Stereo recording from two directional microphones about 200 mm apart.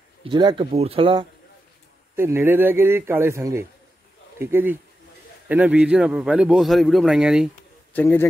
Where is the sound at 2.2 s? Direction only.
10° right (ahead or behind).